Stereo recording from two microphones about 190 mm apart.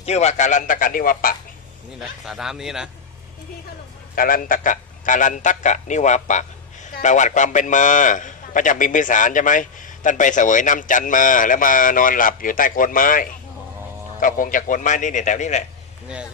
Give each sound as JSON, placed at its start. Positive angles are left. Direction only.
{"t": 0.0, "sound": "a man's voice", "side_deg": 35}
{"t": 2.0, "sound": "speech", "side_deg": 0}
{"t": 4.1, "sound": "a man's voice", "side_deg": 50}